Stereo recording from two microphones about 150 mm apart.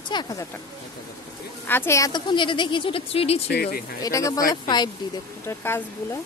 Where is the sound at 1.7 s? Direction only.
15° left (ahead or behind); by 3.4 s 40° left (ahead or behind).